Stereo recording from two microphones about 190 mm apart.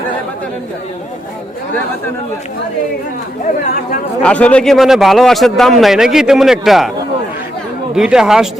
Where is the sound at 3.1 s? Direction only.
40° left (ahead or behind).